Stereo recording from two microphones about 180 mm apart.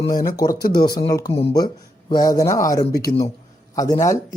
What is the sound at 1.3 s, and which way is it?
Speech, 35° left (ahead or behind).